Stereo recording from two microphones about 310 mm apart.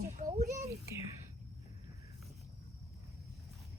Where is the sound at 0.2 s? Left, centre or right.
Right.